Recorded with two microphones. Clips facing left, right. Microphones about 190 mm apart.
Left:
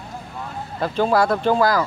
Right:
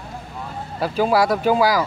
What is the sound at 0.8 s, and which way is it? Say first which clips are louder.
Speech: even; 5° right (ahead or behind).